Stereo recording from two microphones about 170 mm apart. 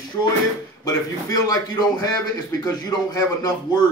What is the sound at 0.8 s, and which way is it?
A man's voice, 20° left (ahead or behind).